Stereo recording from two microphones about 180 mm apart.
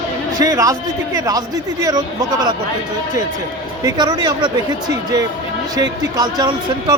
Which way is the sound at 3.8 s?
25° right (ahead or behind).